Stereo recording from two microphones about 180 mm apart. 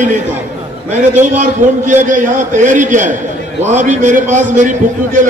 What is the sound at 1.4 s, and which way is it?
A man's voice, 45° right (ahead or behind).